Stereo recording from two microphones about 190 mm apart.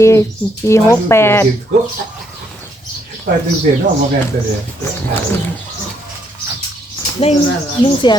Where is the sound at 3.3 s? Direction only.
50° right (ahead or behind).